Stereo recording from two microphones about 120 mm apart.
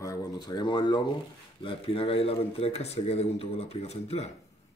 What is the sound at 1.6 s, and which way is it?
Speech, 50° left (ahead or behind).